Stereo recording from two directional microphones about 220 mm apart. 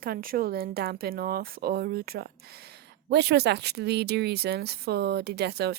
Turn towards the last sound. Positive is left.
turn(degrees=-50)  # may be behind; listen again after turning